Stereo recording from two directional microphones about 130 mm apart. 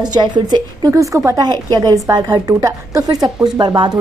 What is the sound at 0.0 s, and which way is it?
A woman's voice, 35° right (ahead or behind).